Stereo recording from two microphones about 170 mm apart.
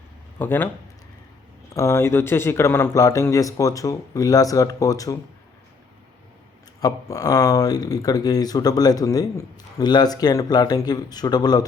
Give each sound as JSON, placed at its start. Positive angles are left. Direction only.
{"t": 0.3, "sound": "speech", "side_deg": 10}
{"t": 1.7, "sound": "speech", "side_deg": 15}
{"t": 6.8, "sound": "speech", "side_deg": 20}